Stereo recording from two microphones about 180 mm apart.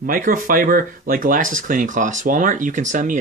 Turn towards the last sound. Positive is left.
turn(degrees=-45)  # may be behind; listen again after turning